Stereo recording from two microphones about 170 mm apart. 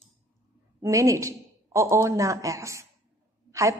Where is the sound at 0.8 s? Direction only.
20° right (ahead or behind).